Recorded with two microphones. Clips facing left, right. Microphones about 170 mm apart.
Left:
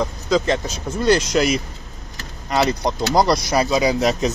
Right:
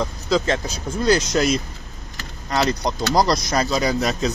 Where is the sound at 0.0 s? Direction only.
Centre (ahead or behind).